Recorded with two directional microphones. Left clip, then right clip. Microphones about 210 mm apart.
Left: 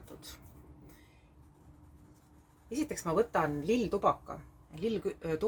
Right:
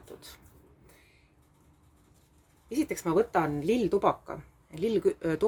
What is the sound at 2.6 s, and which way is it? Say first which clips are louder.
Speech: right 5 dB; 40° right (ahead or behind).